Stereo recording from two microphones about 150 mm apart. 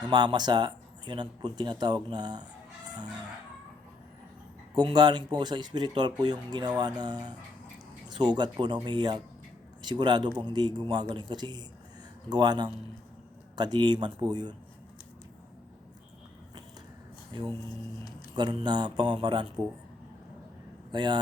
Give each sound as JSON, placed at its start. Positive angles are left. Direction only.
{"t": 0.1, "sound": "speech", "side_deg": -30}
{"t": 4.7, "sound": "speech", "side_deg": -30}
{"t": 17.3, "sound": "speech", "side_deg": -35}
{"t": 20.9, "sound": "speech", "side_deg": -30}